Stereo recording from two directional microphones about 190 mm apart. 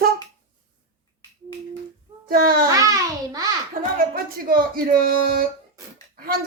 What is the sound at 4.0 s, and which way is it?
Speech, 50° right (ahead or behind).